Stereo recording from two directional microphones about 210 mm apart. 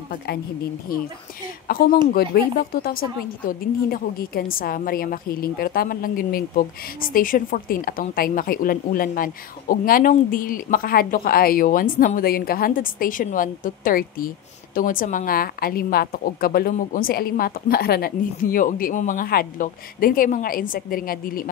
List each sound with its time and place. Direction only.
1.7 s a woman's voice: 45° left (ahead or behind)